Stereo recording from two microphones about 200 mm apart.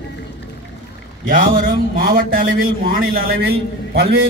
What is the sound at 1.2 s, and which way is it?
A man's voice, 40° right (ahead or behind).